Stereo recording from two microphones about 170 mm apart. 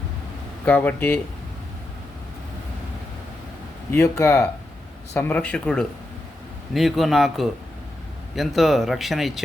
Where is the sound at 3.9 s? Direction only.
15° left (ahead or behind).